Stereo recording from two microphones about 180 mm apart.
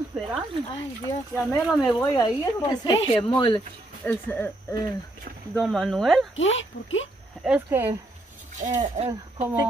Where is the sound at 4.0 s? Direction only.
10° left (ahead or behind).